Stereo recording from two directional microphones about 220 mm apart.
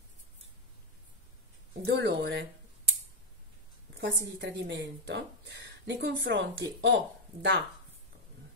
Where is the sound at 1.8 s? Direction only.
50° right (ahead or behind).